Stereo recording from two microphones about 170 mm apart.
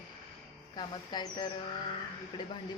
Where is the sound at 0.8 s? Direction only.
25° left (ahead or behind).